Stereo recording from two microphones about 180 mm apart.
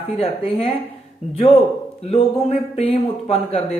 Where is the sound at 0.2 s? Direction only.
35° left (ahead or behind).